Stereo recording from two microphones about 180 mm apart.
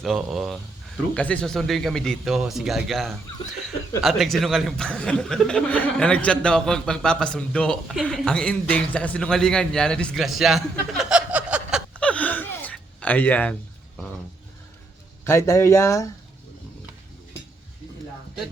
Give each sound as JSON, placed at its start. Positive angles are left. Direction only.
{"t": 0.0, "sound": "speech", "side_deg": 0}
{"t": 11.9, "sound": "gasp", "side_deg": 5}
{"t": 15.2, "sound": "speech", "side_deg": 15}